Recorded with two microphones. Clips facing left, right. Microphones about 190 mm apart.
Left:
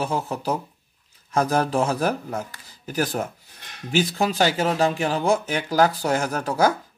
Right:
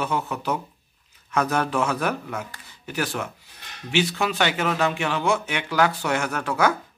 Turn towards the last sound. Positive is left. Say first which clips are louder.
# left 2 dB
turn(degrees=35)  # may be behind; listen again after turning